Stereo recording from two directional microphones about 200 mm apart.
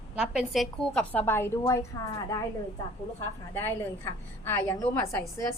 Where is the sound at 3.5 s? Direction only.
10° left (ahead or behind).